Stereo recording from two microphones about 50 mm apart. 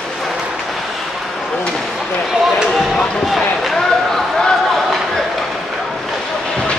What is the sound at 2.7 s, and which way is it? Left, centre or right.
Basketball bounce, centre.